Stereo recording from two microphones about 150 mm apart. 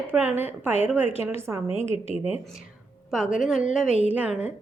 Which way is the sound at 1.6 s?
40° left (ahead or behind).